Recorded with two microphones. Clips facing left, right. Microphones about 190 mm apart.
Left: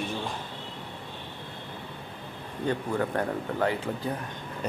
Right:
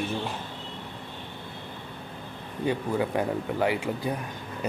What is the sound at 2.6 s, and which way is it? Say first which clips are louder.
Speech: right 1 dB; 10° right (ahead or behind).